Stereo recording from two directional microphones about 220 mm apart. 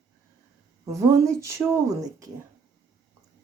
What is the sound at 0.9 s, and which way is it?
Speech, 15° right (ahead or behind).